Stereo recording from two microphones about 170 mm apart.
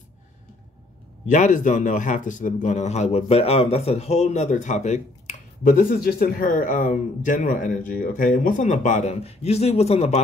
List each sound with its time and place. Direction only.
1.2 s a man's voice: 45° left (ahead or behind)